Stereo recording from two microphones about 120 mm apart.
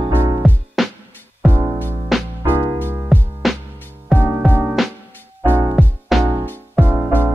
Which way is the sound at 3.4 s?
Centre (ahead or behind).